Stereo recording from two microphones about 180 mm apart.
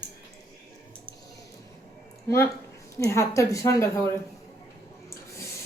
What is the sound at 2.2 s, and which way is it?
Speech, 15° left (ahead or behind).